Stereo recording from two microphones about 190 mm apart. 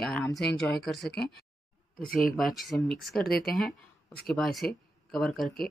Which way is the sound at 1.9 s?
50° left (ahead or behind).